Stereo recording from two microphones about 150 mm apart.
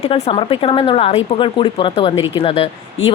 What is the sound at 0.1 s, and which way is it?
A woman's voice, 35° left (ahead or behind).